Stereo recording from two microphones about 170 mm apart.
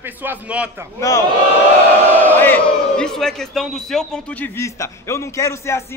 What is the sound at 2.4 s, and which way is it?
A man's voice, 10° left (ahead or behind).